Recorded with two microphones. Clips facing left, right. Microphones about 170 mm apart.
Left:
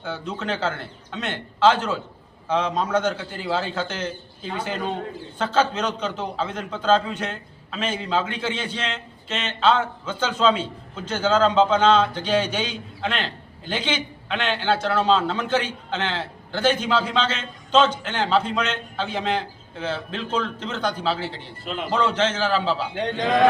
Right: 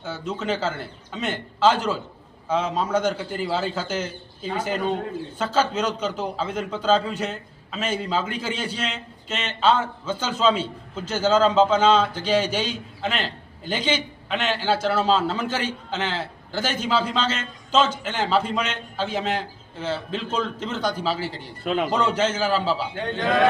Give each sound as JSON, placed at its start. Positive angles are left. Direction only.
{"t": 0.0, "sound": "a man's voice", "side_deg": -5}
{"t": 21.6, "sound": "a man's voice", "side_deg": -65}
{"t": 21.9, "sound": "a man's voice", "side_deg": -10}